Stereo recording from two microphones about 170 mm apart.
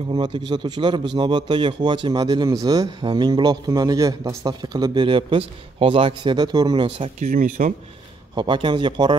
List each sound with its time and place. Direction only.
0.1 s speech: 25° right (ahead or behind)
7.2 s speech: 50° right (ahead or behind)
8.4 s speech: 30° right (ahead or behind)